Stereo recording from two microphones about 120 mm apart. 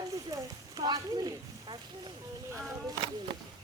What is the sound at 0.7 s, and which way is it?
Speech, 35° right (ahead or behind).